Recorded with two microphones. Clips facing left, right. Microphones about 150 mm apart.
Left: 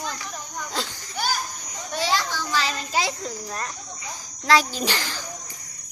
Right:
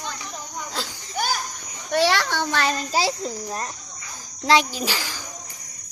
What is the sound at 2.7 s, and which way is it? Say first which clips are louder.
Speech: right 3 dB; 35° right (ahead or behind).